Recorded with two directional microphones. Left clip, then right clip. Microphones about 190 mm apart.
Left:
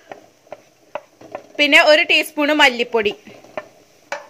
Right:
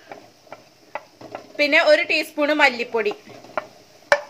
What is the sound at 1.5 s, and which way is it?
A woman's voice, 50° left (ahead or behind).